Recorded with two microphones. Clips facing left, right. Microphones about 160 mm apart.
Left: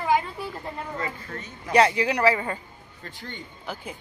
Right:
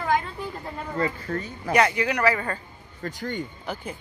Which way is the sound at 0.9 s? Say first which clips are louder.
Right 6 dB; 40° right (ahead or behind).